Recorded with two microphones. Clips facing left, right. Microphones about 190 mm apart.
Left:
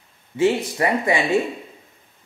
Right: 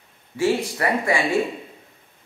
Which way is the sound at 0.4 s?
20° left (ahead or behind).